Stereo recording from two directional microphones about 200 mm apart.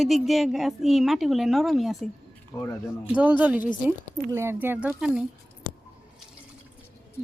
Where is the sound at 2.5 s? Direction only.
15° left (ahead or behind).